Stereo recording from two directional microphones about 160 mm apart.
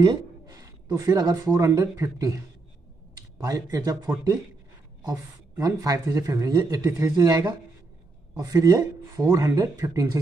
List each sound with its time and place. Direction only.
0.0 s speech: 25° right (ahead or behind)